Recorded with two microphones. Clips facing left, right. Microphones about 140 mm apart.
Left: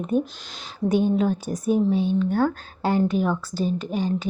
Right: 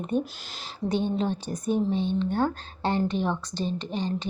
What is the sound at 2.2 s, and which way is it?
Speech, 25° right (ahead or behind).